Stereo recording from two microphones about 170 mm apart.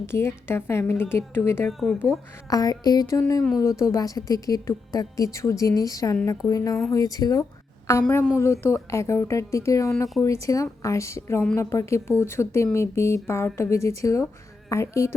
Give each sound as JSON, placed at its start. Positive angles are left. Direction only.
{"t": 0.0, "sound": "speech", "side_deg": 15}
{"t": 1.6, "sound": "a woman's voice", "side_deg": 0}
{"t": 2.5, "sound": "a woman's voice", "side_deg": 20}
{"t": 8.0, "sound": "a woman's voice", "side_deg": 5}